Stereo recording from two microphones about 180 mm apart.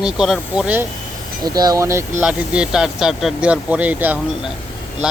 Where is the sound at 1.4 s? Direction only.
20° right (ahead or behind).